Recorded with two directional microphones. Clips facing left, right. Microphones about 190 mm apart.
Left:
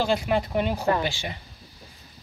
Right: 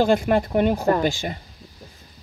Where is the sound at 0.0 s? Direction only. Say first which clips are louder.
Right 5 dB; 50° right (ahead or behind).